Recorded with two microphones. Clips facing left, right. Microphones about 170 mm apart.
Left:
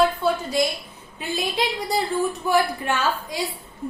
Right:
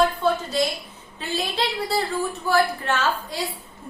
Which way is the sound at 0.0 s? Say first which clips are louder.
Even; 10° left (ahead or behind).